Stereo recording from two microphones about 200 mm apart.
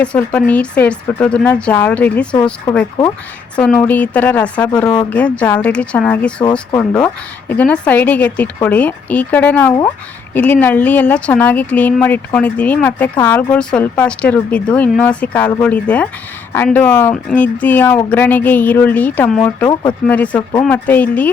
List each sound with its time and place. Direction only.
0.0 s speech: 5° left (ahead or behind)
2.3 s speech: 20° left (ahead or behind)
3.6 s speech: 5° left (ahead or behind)